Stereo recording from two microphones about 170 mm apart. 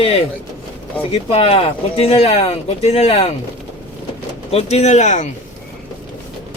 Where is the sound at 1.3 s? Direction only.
35° left (ahead or behind).